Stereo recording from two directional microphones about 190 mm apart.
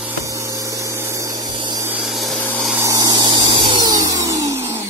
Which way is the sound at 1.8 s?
5° right (ahead or behind).